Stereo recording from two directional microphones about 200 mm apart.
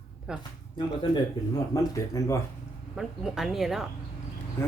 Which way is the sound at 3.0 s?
Centre (ahead or behind).